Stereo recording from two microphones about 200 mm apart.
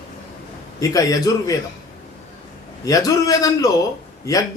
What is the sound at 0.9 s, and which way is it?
Speech, 15° left (ahead or behind).